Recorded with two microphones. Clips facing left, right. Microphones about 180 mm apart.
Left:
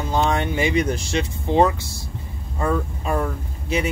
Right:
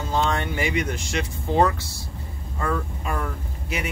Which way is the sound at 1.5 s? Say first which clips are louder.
Left 3 dB; 20° left (ahead or behind).